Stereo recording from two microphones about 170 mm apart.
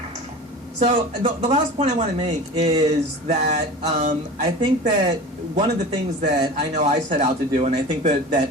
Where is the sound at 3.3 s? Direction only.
40° right (ahead or behind).